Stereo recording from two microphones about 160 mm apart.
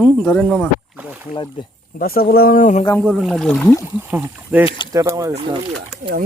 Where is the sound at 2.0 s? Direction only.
70° left (ahead or behind).